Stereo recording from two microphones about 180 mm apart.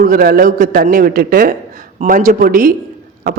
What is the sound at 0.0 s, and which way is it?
A man's voice, 55° right (ahead or behind).